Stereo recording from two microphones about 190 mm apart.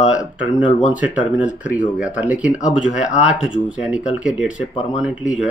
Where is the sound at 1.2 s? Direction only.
5° right (ahead or behind).